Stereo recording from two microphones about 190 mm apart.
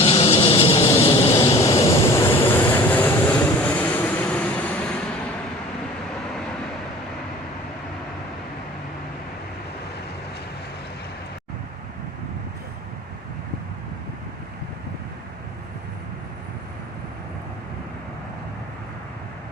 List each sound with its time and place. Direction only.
0.0 s vehicle: 30° left (ahead or behind)
1.2 s vehicle: 15° left (ahead or behind)